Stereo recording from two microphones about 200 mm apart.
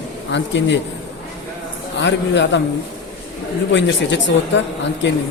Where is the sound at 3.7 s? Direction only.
65° left (ahead or behind).